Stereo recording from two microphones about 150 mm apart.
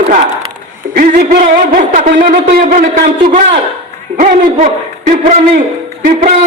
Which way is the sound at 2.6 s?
65° right (ahead or behind).